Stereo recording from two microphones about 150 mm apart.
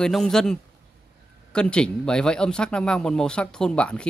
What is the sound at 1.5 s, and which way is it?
Speech, 5° left (ahead or behind).